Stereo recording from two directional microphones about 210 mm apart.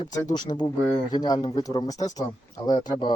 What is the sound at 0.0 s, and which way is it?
Speech, 15° left (ahead or behind).